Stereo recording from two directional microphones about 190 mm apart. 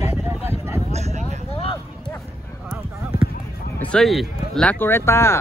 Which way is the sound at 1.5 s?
30° left (ahead or behind).